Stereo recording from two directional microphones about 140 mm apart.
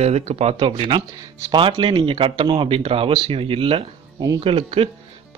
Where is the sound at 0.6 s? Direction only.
35° right (ahead or behind).